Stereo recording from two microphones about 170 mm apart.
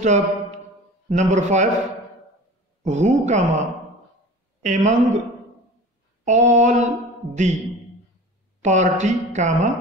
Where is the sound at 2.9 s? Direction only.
45° right (ahead or behind).